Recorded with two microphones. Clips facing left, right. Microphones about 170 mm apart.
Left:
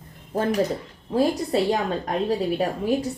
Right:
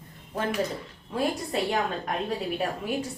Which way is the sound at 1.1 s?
35° left (ahead or behind).